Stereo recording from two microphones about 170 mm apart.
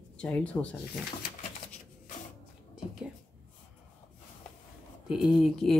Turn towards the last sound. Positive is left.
turn(degrees=0)  # may be behind; listen again after turning